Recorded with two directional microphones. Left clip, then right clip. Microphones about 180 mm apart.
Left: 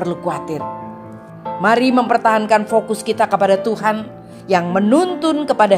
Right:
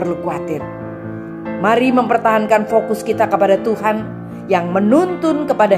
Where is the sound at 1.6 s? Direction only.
30° left (ahead or behind).